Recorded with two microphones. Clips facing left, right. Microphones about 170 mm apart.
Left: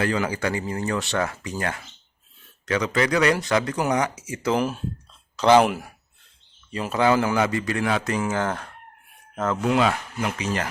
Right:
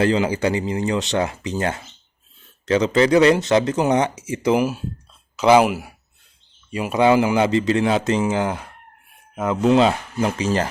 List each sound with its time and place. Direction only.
0.0 s speech: 20° right (ahead or behind)
9.6 s speech: 25° right (ahead or behind)